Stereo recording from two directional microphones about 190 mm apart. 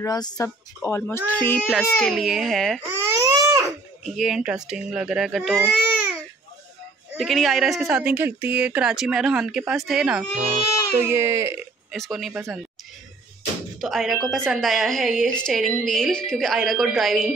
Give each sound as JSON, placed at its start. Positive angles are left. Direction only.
{"t": 0.0, "sound": "speech", "side_deg": 20}
{"t": 2.8, "sound": "baby cry", "side_deg": -15}
{"t": 4.0, "sound": "a woman's voice", "side_deg": 0}
{"t": 7.2, "sound": "a woman's voice", "side_deg": 0}
{"t": 11.9, "sound": "a woman's voice", "side_deg": 0}
{"t": 13.7, "sound": "a woman's voice", "side_deg": 0}